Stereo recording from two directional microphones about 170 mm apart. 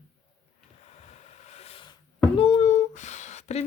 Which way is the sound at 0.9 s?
40° left (ahead or behind).